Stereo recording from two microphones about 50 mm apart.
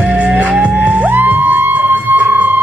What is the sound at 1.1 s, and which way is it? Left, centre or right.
Music, right.